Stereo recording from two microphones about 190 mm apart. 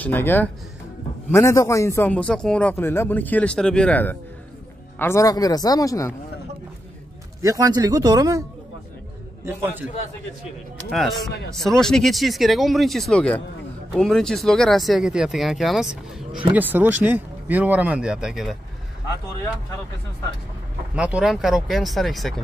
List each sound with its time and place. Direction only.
0.0 s a man's voice: 10° left (ahead or behind)
7.4 s speech: 20° right (ahead or behind)
9.5 s speech: 10° right (ahead or behind)
10.9 s speech: centre (ahead or behind)
20.9 s speech: 5° right (ahead or behind)